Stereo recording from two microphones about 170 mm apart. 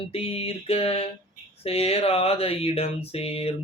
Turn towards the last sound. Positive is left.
turn(degrees=35)  # may be behind; listen again after turning